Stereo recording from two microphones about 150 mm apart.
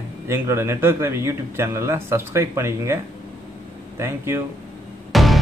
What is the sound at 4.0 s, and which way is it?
Speech, 15° right (ahead or behind).